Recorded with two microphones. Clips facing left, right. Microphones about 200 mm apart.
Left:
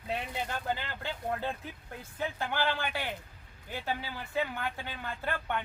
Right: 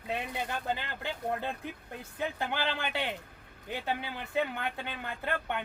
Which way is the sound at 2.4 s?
20° right (ahead or behind).